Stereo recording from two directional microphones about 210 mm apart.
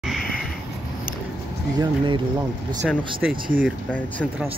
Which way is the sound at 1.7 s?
20° right (ahead or behind).